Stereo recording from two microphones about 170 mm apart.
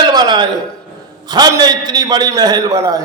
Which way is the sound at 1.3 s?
25° right (ahead or behind).